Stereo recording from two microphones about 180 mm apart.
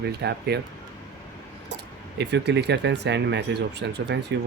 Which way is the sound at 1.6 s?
70° right (ahead or behind).